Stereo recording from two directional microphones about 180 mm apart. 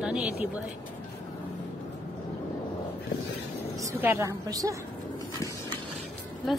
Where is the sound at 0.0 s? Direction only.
5° right (ahead or behind).